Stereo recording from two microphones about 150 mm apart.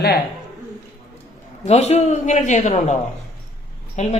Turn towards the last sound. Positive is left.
turn(degrees=50)  # may be behind; listen again after turning